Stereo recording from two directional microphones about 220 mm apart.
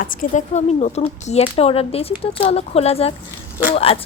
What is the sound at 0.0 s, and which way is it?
Speech, 40° left (ahead or behind).